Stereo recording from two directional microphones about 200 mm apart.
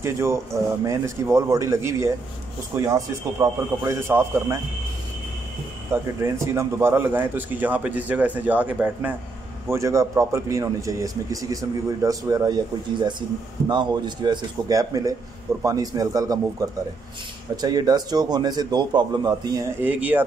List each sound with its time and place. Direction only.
0.0 s a man's voice: 15° right (ahead or behind)
5.9 s a man's voice: 15° right (ahead or behind)
19.8 s a man's voice: 10° right (ahead or behind)